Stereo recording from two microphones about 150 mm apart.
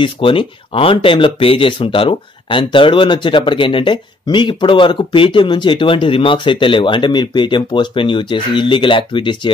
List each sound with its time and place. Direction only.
0.0 s speech: 35° left (ahead or behind)